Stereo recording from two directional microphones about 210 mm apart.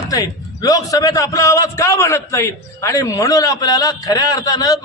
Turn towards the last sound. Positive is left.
turn(degrees=15)  # may be behind; listen again after turning